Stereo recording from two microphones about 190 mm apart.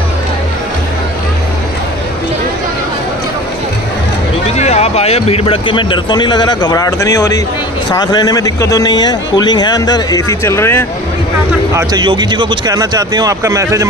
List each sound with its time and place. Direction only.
4.5 s a man's voice: 35° left (ahead or behind); by 10.9 s 15° left (ahead or behind)
11.7 s speech: 20° right (ahead or behind)